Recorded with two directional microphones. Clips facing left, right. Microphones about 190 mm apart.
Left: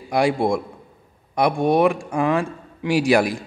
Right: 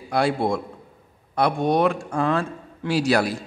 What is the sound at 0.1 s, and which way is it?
A man's voice, 15° left (ahead or behind).